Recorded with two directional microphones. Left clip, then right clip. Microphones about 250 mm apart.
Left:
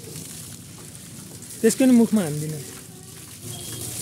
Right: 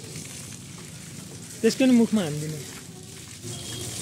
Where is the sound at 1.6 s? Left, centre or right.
Centre.